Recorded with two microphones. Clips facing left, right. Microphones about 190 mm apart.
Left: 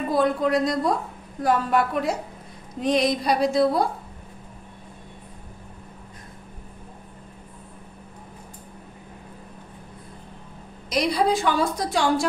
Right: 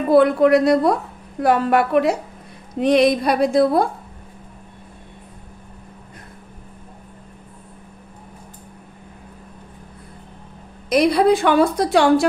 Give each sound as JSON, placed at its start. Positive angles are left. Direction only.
{"t": 0.1, "sound": "a woman's voice", "side_deg": -65}
{"t": 10.9, "sound": "a woman's voice", "side_deg": -60}